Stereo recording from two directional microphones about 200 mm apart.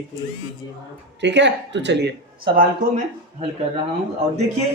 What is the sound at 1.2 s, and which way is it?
Speech, 60° right (ahead or behind).